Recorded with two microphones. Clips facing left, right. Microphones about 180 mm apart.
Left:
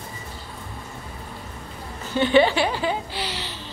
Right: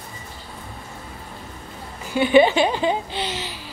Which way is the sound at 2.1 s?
15° right (ahead or behind).